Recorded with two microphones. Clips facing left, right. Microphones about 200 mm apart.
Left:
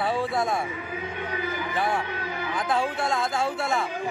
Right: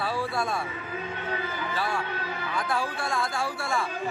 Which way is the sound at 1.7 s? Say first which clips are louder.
Left 3 dB; 20° left (ahead or behind).